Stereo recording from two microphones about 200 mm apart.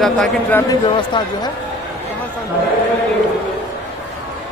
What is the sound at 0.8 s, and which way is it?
Speech, 20° left (ahead or behind).